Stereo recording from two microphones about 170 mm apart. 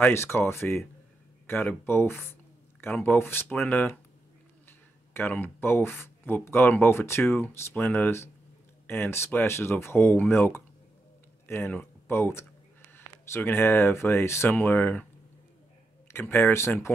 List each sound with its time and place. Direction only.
0.0 s speech: 15° left (ahead or behind)
5.1 s speech: 10° left (ahead or behind)
16.1 s speech: 15° left (ahead or behind)